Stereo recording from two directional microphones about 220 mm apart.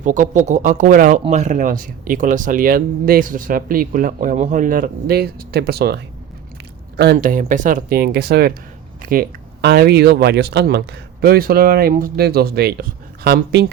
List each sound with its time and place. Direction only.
0.0 s speech: 35° right (ahead or behind)